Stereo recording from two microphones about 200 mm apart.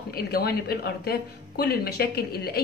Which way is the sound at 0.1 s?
50° left (ahead or behind).